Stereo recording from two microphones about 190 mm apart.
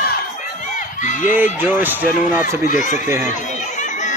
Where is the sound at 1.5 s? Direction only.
10° right (ahead or behind).